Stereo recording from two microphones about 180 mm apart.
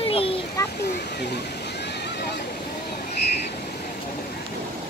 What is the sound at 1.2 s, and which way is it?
Waterfall, 65° left (ahead or behind).